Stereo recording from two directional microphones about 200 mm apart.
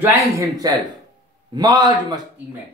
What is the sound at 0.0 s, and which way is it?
A man's voice, 15° right (ahead or behind).